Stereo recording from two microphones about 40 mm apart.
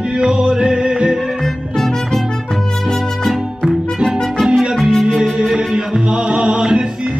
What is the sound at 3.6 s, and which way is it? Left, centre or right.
Music, centre.